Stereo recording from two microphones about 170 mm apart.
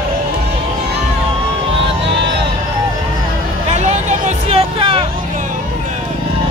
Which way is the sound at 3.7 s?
45° right (ahead or behind).